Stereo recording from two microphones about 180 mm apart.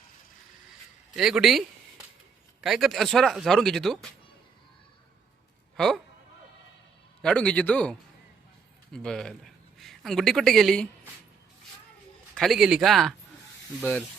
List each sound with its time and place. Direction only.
1.1 s speech: 5° right (ahead or behind)
5.7 s speech: centre (ahead or behind)
7.2 s a man's voice: 5° left (ahead or behind)
12.3 s speech: centre (ahead or behind)